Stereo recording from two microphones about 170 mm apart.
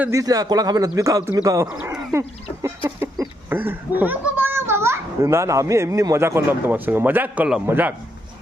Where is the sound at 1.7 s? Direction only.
5° right (ahead or behind).